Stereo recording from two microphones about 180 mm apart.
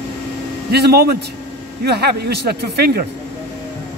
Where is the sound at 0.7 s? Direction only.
60° right (ahead or behind).